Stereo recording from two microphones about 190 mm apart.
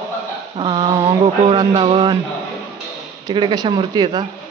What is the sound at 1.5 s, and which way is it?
Speech, 25° right (ahead or behind).